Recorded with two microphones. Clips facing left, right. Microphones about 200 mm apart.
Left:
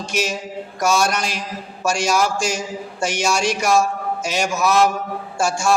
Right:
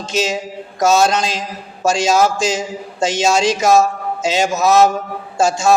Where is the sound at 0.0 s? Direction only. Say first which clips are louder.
Right 4 dB; 20° right (ahead or behind).